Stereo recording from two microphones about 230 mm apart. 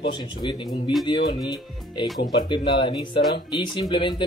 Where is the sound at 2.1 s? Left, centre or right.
Centre.